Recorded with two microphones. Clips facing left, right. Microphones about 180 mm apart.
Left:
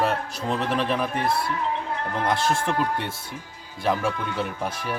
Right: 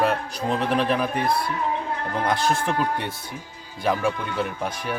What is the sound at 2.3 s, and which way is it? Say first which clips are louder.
Speech: right 1 dB; 25° left (ahead or behind).